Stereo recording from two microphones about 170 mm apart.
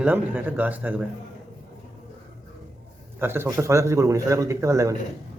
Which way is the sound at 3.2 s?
15° right (ahead or behind).